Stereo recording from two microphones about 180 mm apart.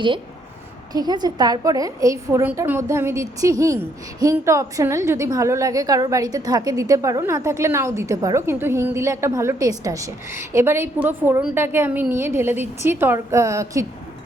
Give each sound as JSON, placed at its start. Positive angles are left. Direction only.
{"t": 0.9, "sound": "a woman's voice", "side_deg": -20}